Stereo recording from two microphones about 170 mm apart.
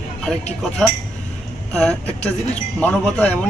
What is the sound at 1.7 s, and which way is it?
Speech, 5° left (ahead or behind).